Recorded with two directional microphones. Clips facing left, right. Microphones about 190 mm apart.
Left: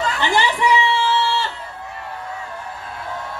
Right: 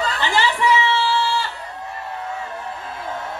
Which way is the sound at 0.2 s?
15° left (ahead or behind).